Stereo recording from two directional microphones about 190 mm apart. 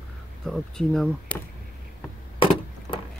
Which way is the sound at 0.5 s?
5° left (ahead or behind).